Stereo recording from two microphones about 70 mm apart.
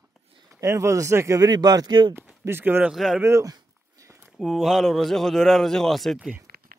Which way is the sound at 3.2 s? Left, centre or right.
Right.